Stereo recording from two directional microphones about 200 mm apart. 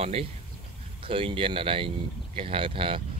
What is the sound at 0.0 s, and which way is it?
Speech, 30° right (ahead or behind).